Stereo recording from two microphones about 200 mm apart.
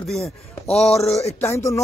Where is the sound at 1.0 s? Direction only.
30° left (ahead or behind).